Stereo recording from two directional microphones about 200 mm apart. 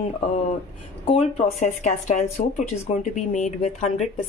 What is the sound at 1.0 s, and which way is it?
Speech, 30° left (ahead or behind).